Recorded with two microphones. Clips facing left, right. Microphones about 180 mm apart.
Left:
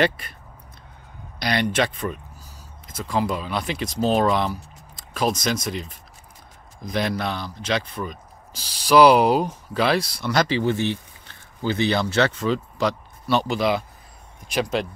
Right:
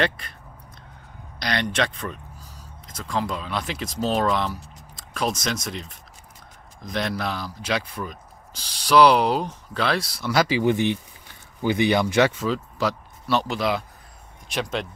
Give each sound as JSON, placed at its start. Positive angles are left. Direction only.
{"t": 1.4, "sound": "speech", "side_deg": 5}